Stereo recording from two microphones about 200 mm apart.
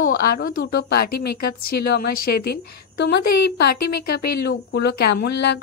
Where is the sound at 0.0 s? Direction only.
45° left (ahead or behind).